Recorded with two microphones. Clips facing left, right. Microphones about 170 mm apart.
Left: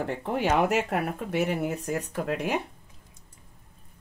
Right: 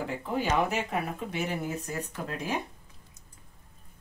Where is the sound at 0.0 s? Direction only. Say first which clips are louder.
Left 3 dB; 65° left (ahead or behind).